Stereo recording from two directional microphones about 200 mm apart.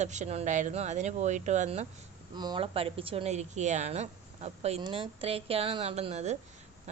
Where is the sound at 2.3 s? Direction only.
20° right (ahead or behind).